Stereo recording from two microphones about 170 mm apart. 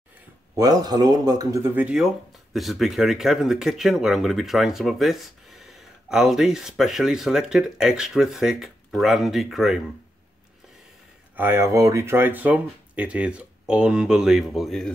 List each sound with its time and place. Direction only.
0.6 s speech: 20° right (ahead or behind); by 9.8 s centre (ahead or behind)
11.3 s speech: 15° right (ahead or behind)